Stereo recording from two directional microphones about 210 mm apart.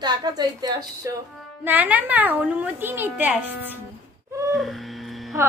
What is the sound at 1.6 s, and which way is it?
A woman's voice, 10° right (ahead or behind).